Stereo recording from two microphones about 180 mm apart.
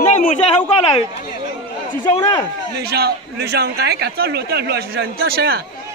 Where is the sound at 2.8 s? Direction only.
60° right (ahead or behind).